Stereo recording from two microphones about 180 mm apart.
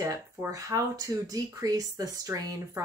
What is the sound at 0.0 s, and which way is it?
Speech, 20° right (ahead or behind).